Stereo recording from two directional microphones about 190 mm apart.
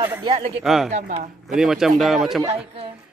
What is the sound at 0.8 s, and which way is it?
Speech, 35° right (ahead or behind).